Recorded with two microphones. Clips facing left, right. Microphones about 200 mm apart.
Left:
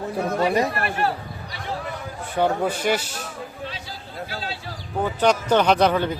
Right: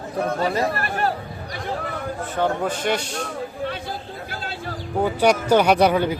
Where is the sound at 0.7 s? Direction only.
40° right (ahead or behind).